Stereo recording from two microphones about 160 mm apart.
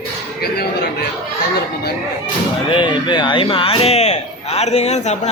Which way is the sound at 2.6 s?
30° left (ahead or behind).